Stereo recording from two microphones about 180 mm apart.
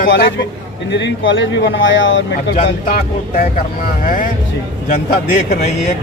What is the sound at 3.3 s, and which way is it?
Speech, 50° left (ahead or behind).